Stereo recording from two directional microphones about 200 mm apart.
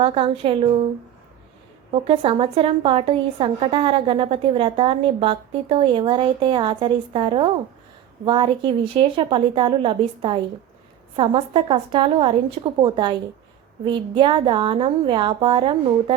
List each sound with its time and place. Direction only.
0.0 s a woman's voice: 30° right (ahead or behind)
1.9 s a woman's voice: 30° right (ahead or behind)